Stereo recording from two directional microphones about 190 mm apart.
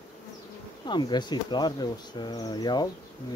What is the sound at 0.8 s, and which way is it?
Speech, 25° left (ahead or behind).